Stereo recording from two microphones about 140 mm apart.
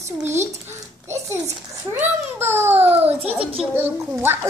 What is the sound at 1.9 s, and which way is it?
A child's voice, 15° right (ahead or behind).